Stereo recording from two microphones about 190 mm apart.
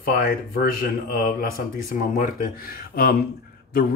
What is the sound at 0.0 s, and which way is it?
Speech, 50° left (ahead or behind).